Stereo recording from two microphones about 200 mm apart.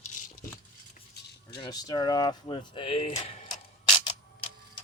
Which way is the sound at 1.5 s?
20° left (ahead or behind).